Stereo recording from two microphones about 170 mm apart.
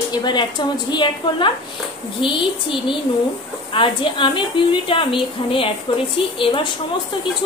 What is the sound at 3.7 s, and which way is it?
A woman's voice, 30° left (ahead or behind).